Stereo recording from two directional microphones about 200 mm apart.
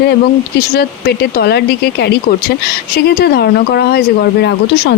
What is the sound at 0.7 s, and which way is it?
Speech, 55° left (ahead or behind).